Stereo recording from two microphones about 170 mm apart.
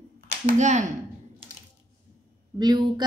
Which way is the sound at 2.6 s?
25° right (ahead or behind).